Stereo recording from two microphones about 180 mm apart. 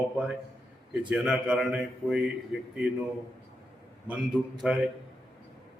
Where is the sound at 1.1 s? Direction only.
5° right (ahead or behind).